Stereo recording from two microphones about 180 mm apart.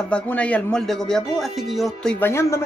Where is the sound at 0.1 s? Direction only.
5° left (ahead or behind).